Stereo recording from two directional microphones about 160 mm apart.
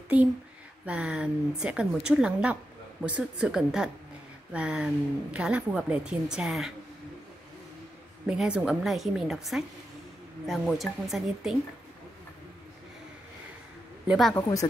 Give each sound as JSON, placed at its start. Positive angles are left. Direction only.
{"t": 0.1, "sound": "a woman's voice", "side_deg": -10}
{"t": 8.3, "sound": "a woman's voice", "side_deg": -5}
{"t": 14.0, "sound": "a woman's voice", "side_deg": 0}
{"t": 14.3, "sound": "speech", "side_deg": 20}